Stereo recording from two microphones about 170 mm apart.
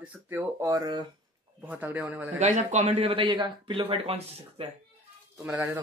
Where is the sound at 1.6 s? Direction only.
10° right (ahead or behind).